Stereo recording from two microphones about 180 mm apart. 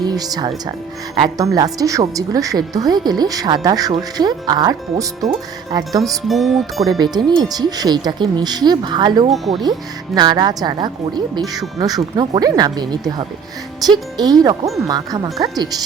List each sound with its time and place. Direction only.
0.0 s speech: 20° right (ahead or behind)
6.2 s speech: centre (ahead or behind)
7.0 s speech: 25° right (ahead or behind)
9.3 s speech: centre (ahead or behind)
10.2 s speech: 25° right (ahead or behind)